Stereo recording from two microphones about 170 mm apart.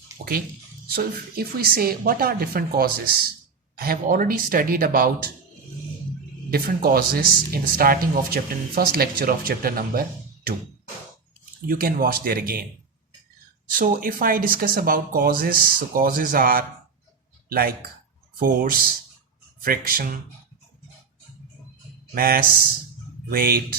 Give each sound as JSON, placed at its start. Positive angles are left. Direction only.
{"t": 0.2, "sound": "speech", "side_deg": -55}
{"t": 6.5, "sound": "speech", "side_deg": -60}
{"t": 11.7, "sound": "speech", "side_deg": -60}
{"t": 13.7, "sound": "speech", "side_deg": -55}
{"t": 22.1, "sound": "speech", "side_deg": -60}